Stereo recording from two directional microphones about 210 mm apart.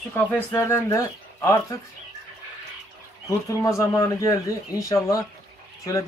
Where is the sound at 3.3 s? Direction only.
15° left (ahead or behind).